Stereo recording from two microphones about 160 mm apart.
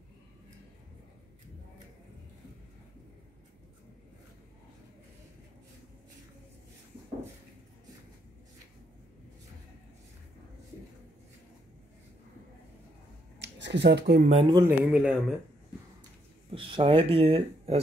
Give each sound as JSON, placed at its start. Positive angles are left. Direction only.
{"t": 13.4, "sound": "a sound", "side_deg": -90}
{"t": 14.3, "sound": "speech", "side_deg": -30}
{"t": 14.6, "sound": "speech", "side_deg": -10}
{"t": 16.4, "sound": "speech", "side_deg": -35}